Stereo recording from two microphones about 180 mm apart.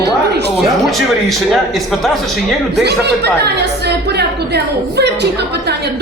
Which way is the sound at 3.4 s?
65° right (ahead or behind).